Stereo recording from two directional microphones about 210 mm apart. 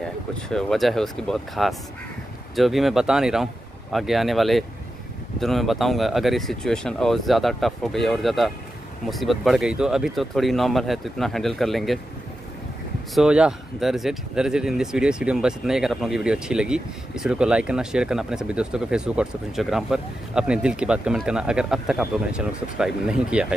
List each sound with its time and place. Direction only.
0.4 s speech: centre (ahead or behind)
13.1 s speech: 5° right (ahead or behind)